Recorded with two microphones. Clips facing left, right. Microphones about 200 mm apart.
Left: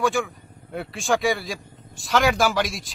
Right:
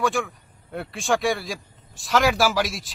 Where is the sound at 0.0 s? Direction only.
Centre (ahead or behind).